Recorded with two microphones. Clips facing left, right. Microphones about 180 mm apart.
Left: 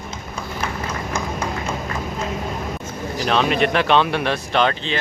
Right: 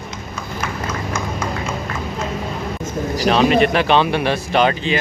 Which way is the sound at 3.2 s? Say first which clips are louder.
Right 4 dB; centre (ahead or behind).